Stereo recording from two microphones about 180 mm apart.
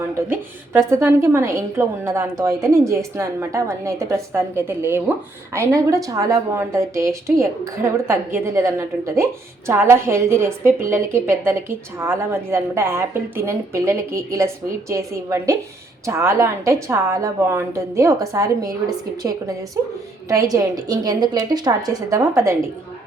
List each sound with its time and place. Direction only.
0.3 s a woman's voice: 15° right (ahead or behind)